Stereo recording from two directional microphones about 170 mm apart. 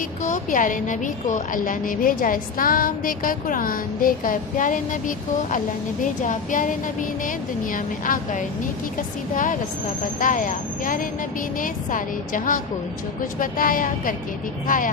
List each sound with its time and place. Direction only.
0.2 s a woman's voice: 45° left (ahead or behind)